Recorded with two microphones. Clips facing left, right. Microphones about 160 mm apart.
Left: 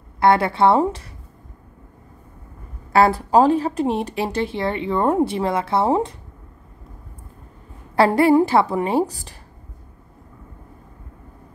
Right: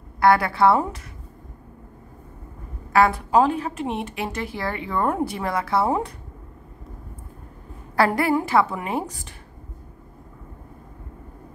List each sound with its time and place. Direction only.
0.2 s a woman's voice: 25° left (ahead or behind)
2.9 s a woman's voice: 30° left (ahead or behind)
7.9 s a woman's voice: 25° left (ahead or behind)